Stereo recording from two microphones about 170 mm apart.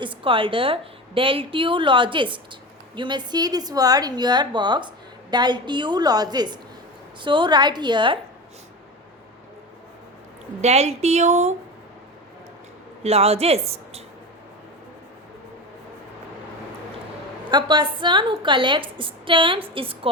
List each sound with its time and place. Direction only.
0.0 s a woman's voice: 30° right (ahead or behind)
10.6 s speech: 40° right (ahead or behind)
13.0 s a woman's voice: 35° right (ahead or behind)
17.5 s a woman's voice: 30° right (ahead or behind)